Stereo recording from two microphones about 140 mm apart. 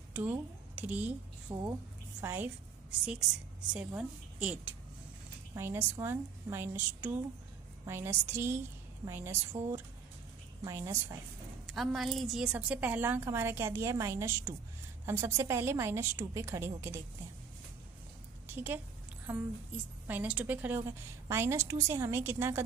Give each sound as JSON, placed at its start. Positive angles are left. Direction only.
{"t": 0.1, "sound": "a woman's voice", "side_deg": -10}
{"t": 3.7, "sound": "a woman's voice", "side_deg": -10}
{"t": 11.6, "sound": "a woman's voice", "side_deg": 0}
{"t": 18.5, "sound": "a woman's voice", "side_deg": -15}
{"t": 20.1, "sound": "a woman's voice", "side_deg": -10}